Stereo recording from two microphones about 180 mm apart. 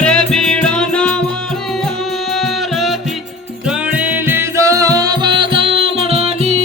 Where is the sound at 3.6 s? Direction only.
10° right (ahead or behind); by 6.6 s 35° right (ahead or behind).